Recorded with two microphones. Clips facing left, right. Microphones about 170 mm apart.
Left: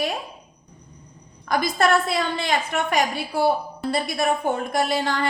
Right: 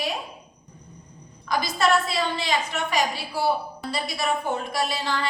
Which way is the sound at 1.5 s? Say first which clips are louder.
Left 2 dB; 55° left (ahead or behind).